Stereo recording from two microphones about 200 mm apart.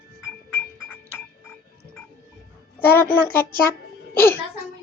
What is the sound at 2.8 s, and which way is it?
A child's voice, 10° left (ahead or behind).